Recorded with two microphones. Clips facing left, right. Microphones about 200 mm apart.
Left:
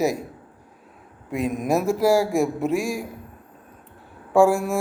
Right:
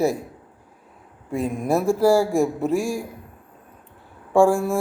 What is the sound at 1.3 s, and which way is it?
Speech, 30° right (ahead or behind).